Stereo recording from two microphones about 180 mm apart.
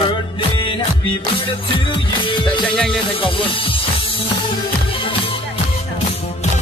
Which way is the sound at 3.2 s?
30° left (ahead or behind).